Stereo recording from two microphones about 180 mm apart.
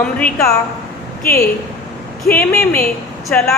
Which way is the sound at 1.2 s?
60° left (ahead or behind).